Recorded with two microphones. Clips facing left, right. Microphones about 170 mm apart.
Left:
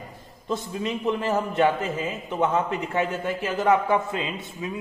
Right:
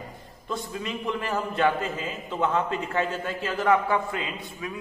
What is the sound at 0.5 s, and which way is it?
A man's voice, 20° left (ahead or behind).